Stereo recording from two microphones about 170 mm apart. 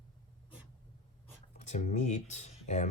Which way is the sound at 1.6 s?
45° left (ahead or behind).